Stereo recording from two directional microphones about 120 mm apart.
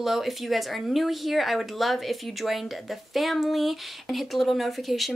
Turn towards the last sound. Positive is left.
turn(degrees=0)  # may be behind; listen again after turning